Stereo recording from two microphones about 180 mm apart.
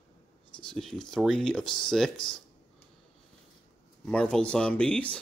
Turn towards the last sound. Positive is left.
turn(degrees=5)  # may be behind; listen again after turning